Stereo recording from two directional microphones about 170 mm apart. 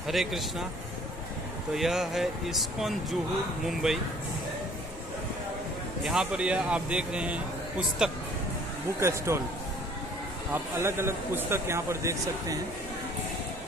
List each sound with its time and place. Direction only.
0.0 s speech: centre (ahead or behind)
1.7 s speech: centre (ahead or behind)
6.0 s speech: 5° right (ahead or behind)
9.0 s speech: 15° right (ahead or behind)
10.5 s speech: 15° right (ahead or behind)